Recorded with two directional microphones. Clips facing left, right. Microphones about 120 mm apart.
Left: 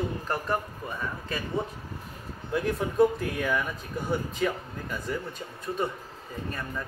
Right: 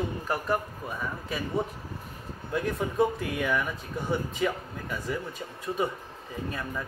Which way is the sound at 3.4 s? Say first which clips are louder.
Right 1 dB; centre (ahead or behind).